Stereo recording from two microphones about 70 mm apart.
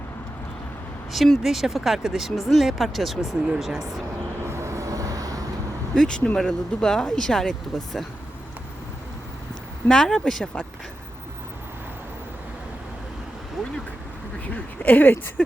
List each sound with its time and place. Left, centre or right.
1.1 s speech: centre
4.4 s vehicle: right
5.9 s speech: centre
9.9 s speech: centre
14.4 s speech: left